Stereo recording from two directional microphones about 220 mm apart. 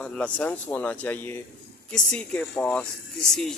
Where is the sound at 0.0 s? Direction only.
5° left (ahead or behind).